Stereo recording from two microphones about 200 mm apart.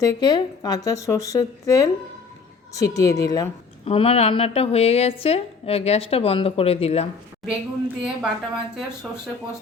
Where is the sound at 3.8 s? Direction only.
30° left (ahead or behind).